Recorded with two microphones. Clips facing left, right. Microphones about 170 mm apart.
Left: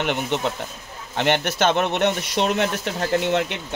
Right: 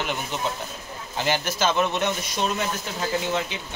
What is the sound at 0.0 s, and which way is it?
Speech, 70° left (ahead or behind).